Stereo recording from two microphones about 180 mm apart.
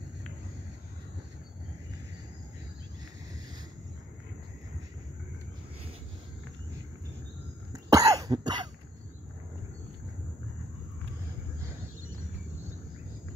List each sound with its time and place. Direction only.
7.7 s cough: 20° right (ahead or behind)